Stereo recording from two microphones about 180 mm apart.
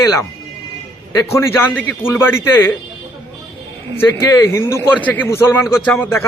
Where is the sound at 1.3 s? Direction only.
15° left (ahead or behind).